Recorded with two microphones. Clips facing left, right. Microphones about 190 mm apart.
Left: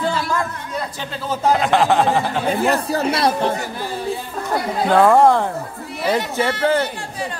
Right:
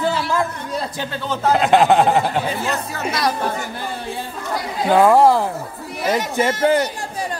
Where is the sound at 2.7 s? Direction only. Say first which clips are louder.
Left 5 dB; 30° left (ahead or behind).